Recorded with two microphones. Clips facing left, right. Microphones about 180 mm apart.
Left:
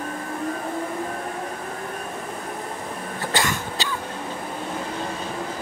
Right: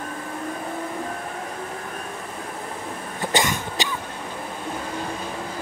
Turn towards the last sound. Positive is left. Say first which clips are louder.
# right 1 dB
turn(degrees=-20)  # may be behind; listen again after turning